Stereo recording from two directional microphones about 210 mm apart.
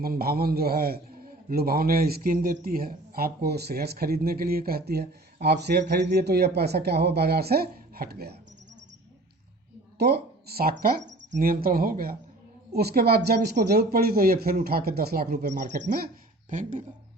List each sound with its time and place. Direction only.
0.0 s a man's voice: 45° right (ahead or behind)
10.0 s speech: 50° right (ahead or behind)
11.3 s a man's voice: 40° right (ahead or behind)